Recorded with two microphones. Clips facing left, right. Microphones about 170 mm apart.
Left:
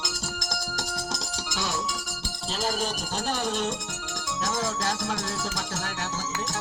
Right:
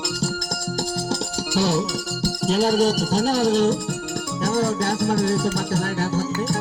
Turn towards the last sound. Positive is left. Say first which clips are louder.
# right 9 dB
turn(degrees=-30)  # may be behind; listen again after turning